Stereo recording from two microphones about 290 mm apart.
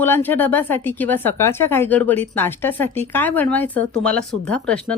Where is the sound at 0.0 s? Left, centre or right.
Centre.